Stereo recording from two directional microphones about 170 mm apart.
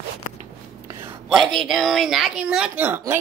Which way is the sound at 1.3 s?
Centre (ahead or behind).